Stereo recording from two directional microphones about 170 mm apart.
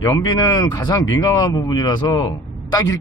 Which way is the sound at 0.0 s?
20° left (ahead or behind).